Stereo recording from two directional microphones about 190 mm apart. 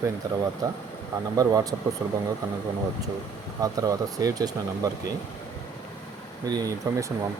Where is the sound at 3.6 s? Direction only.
20° right (ahead or behind).